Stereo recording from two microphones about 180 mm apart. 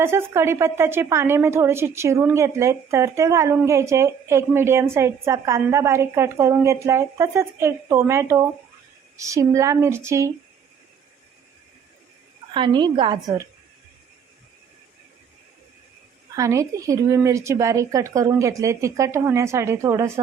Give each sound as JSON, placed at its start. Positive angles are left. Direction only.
{"t": 0.0, "sound": "a woman's voice", "side_deg": -15}
{"t": 12.5, "sound": "a woman's voice", "side_deg": -25}
{"t": 16.3, "sound": "a woman's voice", "side_deg": -20}